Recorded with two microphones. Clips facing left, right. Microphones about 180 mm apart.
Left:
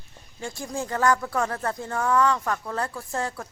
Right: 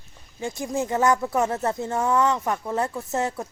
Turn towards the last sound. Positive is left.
turn(degrees=-20)  # may be behind; listen again after turning